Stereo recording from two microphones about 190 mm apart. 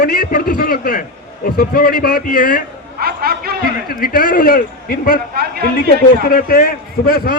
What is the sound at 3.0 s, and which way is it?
Speech, 55° right (ahead or behind).